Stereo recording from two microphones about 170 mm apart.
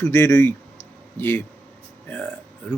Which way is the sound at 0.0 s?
15° left (ahead or behind).